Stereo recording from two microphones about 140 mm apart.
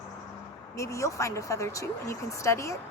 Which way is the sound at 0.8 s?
20° left (ahead or behind).